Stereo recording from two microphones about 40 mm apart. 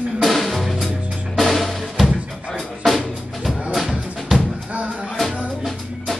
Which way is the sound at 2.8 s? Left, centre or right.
Centre.